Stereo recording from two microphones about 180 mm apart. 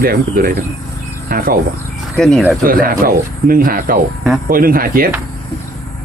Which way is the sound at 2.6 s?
50° right (ahead or behind).